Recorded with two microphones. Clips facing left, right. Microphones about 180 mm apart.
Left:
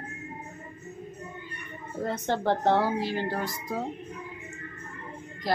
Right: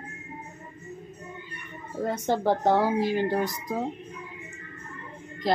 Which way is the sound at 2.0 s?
10° right (ahead or behind).